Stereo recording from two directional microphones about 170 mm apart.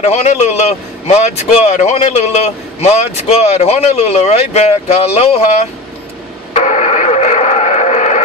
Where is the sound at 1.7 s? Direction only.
45° left (ahead or behind).